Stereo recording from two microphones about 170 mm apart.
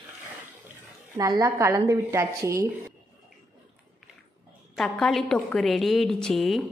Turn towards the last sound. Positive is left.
turn(degrees=0)  # may be behind; listen again after turning